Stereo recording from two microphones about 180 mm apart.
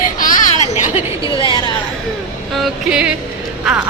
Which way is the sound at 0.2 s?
50° left (ahead or behind).